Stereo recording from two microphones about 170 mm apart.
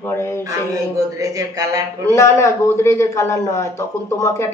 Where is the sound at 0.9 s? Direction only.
20° right (ahead or behind).